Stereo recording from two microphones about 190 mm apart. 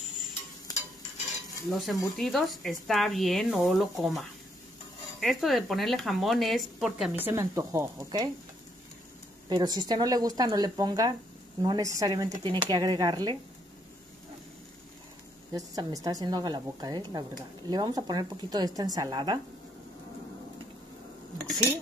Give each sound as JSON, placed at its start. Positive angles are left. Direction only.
{"t": 1.7, "sound": "speech", "side_deg": 0}
{"t": 7.2, "sound": "speech", "side_deg": -15}
{"t": 9.5, "sound": "a woman's voice", "side_deg": -20}
{"t": 15.5, "sound": "a woman's voice", "side_deg": -20}